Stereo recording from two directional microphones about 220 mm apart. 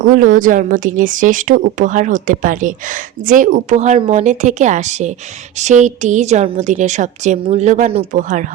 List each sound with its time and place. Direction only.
0.0 s speech: 40° right (ahead or behind)